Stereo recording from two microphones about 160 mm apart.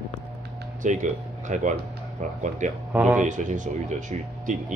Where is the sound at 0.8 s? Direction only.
50° right (ahead or behind).